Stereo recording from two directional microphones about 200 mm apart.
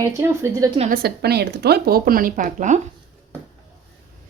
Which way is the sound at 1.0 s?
55° right (ahead or behind).